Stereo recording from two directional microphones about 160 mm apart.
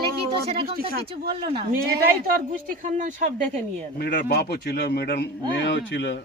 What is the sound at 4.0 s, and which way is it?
A man's voice, 85° left.